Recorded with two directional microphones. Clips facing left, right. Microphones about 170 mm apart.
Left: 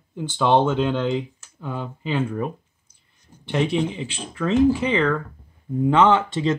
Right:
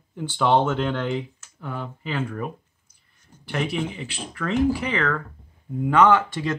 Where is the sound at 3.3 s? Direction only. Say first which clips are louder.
Left 2 dB; 10° left (ahead or behind).